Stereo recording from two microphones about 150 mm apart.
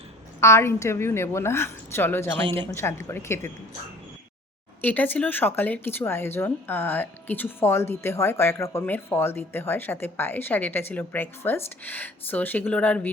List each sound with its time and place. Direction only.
0.3 s speech: 20° left (ahead or behind)
4.8 s speech: 10° left (ahead or behind)